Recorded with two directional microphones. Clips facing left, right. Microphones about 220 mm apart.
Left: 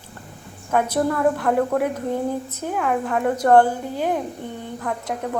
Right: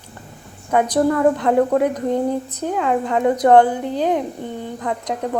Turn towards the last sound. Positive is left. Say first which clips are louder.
# right 3 dB
turn(degrees=-20)  # may be behind; listen again after turning